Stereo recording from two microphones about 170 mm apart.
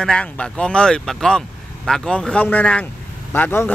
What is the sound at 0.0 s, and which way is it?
A man's voice, 5° left (ahead or behind).